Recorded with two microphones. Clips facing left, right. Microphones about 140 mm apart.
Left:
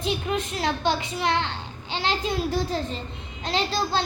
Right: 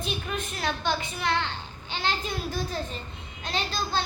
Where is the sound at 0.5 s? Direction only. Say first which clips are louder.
Left 2 dB; 25° left (ahead or behind).